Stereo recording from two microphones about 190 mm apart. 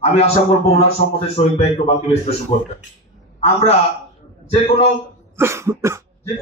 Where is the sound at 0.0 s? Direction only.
30° left (ahead or behind).